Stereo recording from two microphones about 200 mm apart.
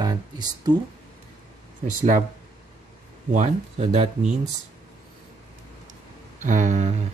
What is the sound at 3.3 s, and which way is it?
Speech, 35° right (ahead or behind).